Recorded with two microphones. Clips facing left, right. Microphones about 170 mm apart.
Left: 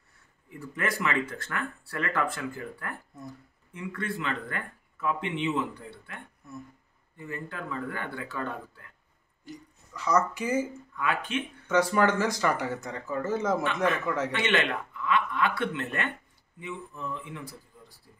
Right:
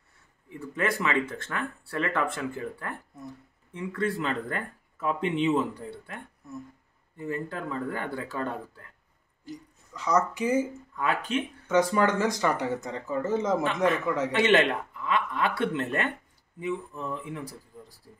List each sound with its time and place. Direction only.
0.5 s speech: 25° right (ahead or behind)
9.9 s speech: 15° right (ahead or behind)
11.0 s speech: 35° right (ahead or behind)
11.6 s speech: 20° right (ahead or behind)
14.3 s a man's voice: 40° right (ahead or behind)